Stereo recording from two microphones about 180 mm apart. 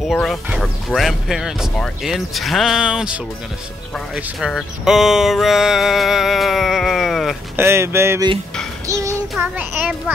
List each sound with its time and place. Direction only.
0.0 s speech: centre (ahead or behind)
7.5 s speech: 15° right (ahead or behind)
8.8 s child singing: 15° right (ahead or behind)
9.4 s speech: 5° right (ahead or behind)